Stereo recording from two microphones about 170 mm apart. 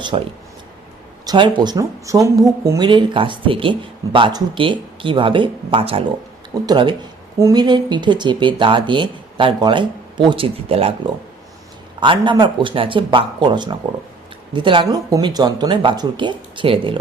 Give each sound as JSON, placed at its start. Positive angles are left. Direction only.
{"t": 0.1, "sound": "speech", "side_deg": -30}